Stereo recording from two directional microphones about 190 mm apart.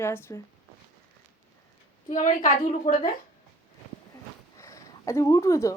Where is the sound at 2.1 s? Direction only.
40° left (ahead or behind).